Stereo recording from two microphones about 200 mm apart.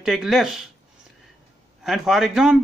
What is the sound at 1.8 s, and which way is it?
Speech, centre (ahead or behind).